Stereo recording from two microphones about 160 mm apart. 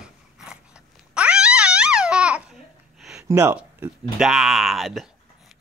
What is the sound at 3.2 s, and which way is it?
Speech, 15° right (ahead or behind).